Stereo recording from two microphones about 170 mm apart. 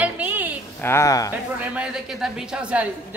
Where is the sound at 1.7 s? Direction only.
5° right (ahead or behind).